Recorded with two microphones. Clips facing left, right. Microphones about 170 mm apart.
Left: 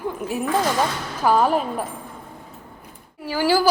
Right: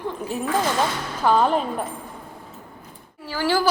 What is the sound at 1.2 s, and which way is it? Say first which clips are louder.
Speech: left 1 dB; 5° left (ahead or behind).